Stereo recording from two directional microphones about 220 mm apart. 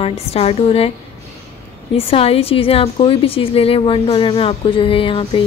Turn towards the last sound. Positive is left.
turn(degrees=25)  # may be behind; listen again after turning